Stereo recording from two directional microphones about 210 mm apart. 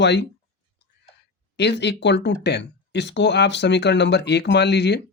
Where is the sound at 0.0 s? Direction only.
55° left (ahead or behind).